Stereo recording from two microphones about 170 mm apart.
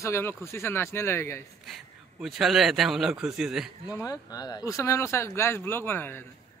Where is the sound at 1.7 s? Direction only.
Centre (ahead or behind).